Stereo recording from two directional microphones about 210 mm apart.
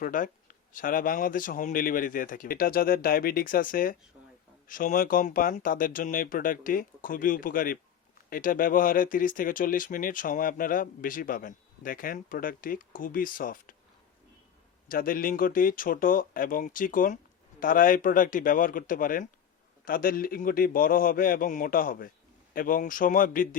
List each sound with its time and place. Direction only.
0.0 s speech: 40° left (ahead or behind)
14.8 s a man's voice: 40° left (ahead or behind)